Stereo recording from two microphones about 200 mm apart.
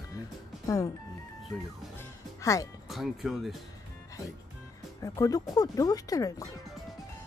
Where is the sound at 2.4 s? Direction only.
15° left (ahead or behind).